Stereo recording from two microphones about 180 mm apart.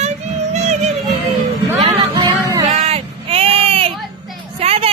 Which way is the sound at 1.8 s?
25° right (ahead or behind).